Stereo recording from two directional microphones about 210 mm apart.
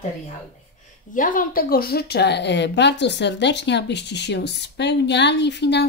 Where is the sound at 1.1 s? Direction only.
40° left (ahead or behind).